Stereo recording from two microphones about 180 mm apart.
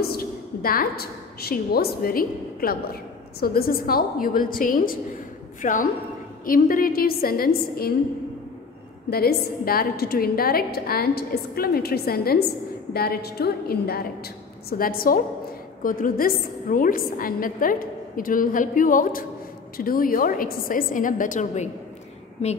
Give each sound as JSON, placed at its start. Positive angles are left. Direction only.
{"t": 0.0, "sound": "a woman's voice", "side_deg": 55}
{"t": 9.1, "sound": "a woman's voice", "side_deg": 55}